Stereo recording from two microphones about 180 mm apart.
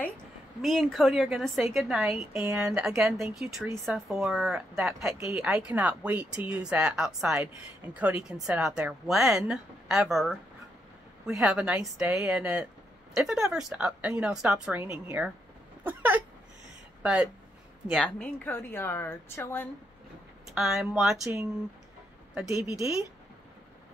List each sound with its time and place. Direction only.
0.6 s a woman's voice: centre (ahead or behind)
20.5 s speech: centre (ahead or behind)
22.7 s speech: 15° right (ahead or behind)